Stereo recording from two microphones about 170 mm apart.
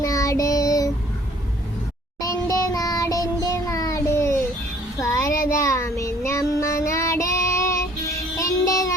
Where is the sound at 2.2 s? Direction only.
20° left (ahead or behind).